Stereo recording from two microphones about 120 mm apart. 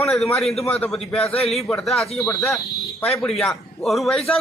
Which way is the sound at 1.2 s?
55° left (ahead or behind).